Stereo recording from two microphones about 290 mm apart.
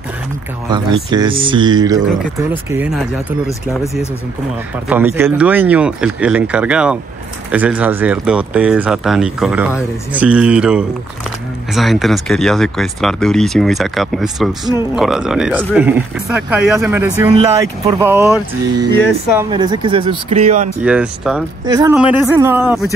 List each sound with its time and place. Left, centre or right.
1.1 s speech: centre
4.8 s speech: centre
19.3 s speech: centre
20.8 s speech: centre